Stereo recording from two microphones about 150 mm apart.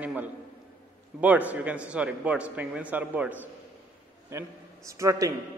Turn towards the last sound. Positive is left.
turn(degrees=-20)  # may be behind; listen again after turning